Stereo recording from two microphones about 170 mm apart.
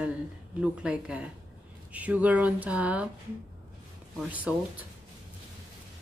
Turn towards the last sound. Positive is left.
turn(degrees=-10)  # may be behind; listen again after turning